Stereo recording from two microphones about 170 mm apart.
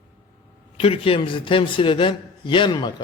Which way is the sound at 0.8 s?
35° left (ahead or behind).